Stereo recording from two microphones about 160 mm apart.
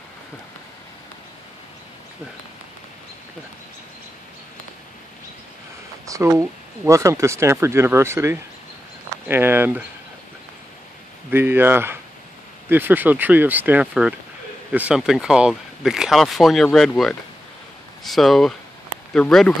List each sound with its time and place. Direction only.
6.0 s speech: 20° right (ahead or behind)
11.2 s speech: 15° right (ahead or behind); by 19.5 s 5° left (ahead or behind)